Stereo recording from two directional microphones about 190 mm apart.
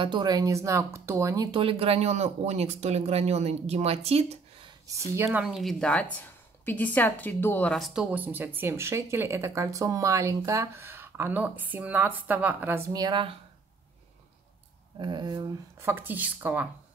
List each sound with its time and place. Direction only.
0.0 s speech: 25° right (ahead or behind)
4.8 s a woman's voice: 15° right (ahead or behind)
5.4 s a woman's voice: centre (ahead or behind)
12.9 s speech: 25° right (ahead or behind)
15.0 s a woman's voice: 25° right (ahead or behind)